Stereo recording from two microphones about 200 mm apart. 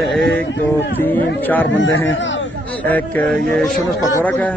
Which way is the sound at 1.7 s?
70° left (ahead or behind).